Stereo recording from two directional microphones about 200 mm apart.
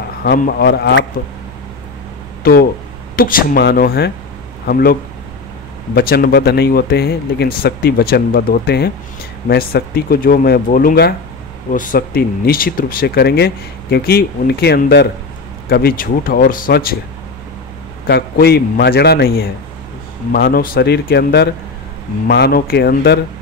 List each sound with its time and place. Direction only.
0.2 s speech: 50° left (ahead or behind)
3.2 s speech: 45° left (ahead or behind)
5.9 s speech: 50° left (ahead or behind)
18.0 s speech: 55° left (ahead or behind)